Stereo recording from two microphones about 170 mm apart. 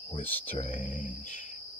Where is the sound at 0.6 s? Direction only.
50° left (ahead or behind).